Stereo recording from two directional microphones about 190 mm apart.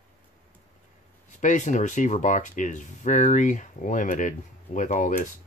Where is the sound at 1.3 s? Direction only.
40° left (ahead or behind).